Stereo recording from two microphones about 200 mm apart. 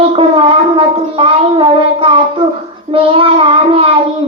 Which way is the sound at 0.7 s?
30° right (ahead or behind).